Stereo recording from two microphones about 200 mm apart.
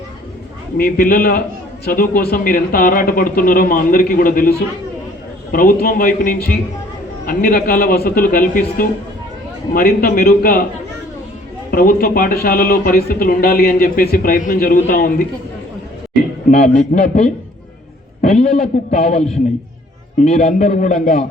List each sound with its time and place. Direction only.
0.8 s a man's voice: 45° left (ahead or behind)
11.7 s a man's voice: 45° left (ahead or behind)
16.5 s a man's voice: 40° left (ahead or behind)
18.2 s a man's voice: 30° left (ahead or behind)
20.2 s a man's voice: 35° left (ahead or behind)